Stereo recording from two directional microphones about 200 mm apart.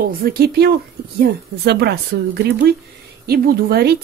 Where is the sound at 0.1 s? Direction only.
50° right (ahead or behind).